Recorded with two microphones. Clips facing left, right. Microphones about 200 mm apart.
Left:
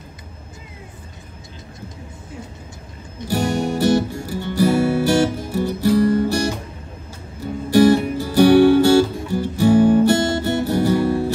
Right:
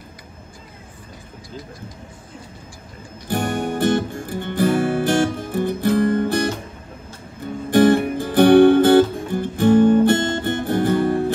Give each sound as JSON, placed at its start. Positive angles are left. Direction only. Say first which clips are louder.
{"t": 3.3, "sound": "music", "louder": "left 2 dB", "side_deg": -55}
{"t": 7.7, "sound": "music", "louder": "left 1 dB", "side_deg": -55}